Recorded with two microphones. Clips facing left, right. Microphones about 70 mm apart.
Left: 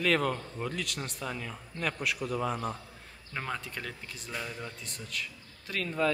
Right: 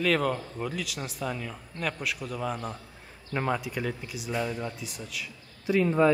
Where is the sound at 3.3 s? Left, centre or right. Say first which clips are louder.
Right 7 dB; centre.